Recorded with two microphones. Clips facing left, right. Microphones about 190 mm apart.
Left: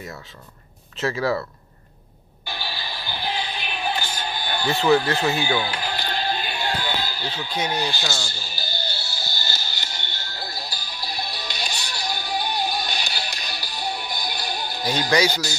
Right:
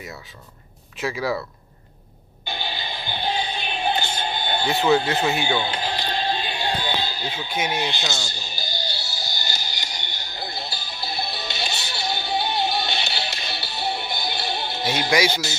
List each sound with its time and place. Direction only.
0.9 s speech: 15° right (ahead or behind)
2.4 s music: 20° right (ahead or behind)
7.8 s music: 20° right (ahead or behind)
15.2 s speech: 25° right (ahead or behind)